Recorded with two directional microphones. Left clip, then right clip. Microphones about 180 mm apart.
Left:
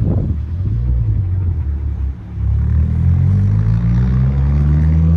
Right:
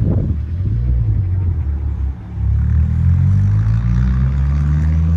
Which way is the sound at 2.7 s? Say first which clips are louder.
Left 1 dB; 60° left (ahead or behind).